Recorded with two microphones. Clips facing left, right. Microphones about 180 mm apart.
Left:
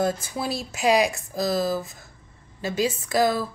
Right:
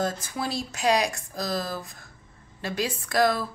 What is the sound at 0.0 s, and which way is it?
A woman's voice, 5° left (ahead or behind).